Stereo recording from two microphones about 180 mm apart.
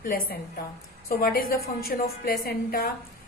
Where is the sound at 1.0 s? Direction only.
55° left (ahead or behind).